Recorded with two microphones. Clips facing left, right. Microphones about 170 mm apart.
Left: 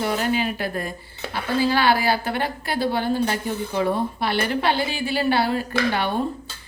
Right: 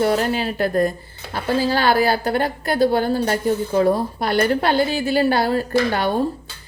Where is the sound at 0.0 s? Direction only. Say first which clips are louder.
Right 4 dB; 40° right (ahead or behind).